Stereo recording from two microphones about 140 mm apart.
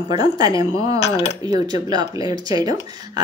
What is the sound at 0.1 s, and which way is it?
Speech, 30° right (ahead or behind).